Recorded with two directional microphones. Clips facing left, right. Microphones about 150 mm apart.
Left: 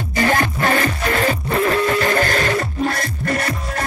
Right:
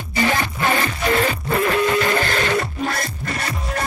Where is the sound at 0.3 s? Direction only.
45° left (ahead or behind).